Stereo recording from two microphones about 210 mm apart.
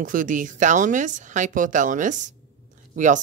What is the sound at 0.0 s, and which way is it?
Speech, 40° right (ahead or behind).